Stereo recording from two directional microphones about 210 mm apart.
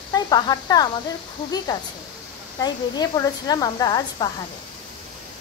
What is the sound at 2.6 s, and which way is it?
Speech, 20° left (ahead or behind).